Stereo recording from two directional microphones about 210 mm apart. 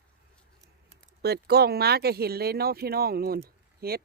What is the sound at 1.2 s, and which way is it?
Speech, 50° right (ahead or behind).